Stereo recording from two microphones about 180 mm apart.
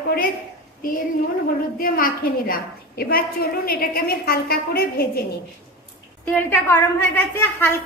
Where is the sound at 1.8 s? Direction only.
50° left (ahead or behind).